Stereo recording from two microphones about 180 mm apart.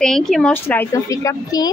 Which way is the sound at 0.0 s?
Centre (ahead or behind).